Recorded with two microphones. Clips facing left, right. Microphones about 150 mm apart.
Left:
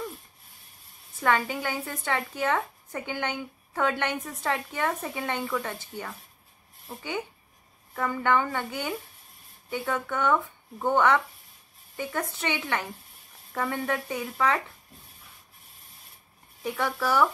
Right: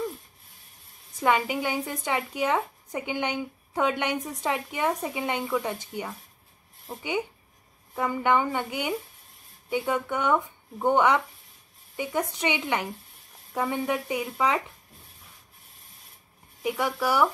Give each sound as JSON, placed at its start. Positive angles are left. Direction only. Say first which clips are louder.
{"t": 1.2, "sound": "a woman's voice", "louder": "right 2 dB", "side_deg": -15}
{"t": 16.6, "sound": "a woman's voice", "louder": "right 2 dB", "side_deg": -10}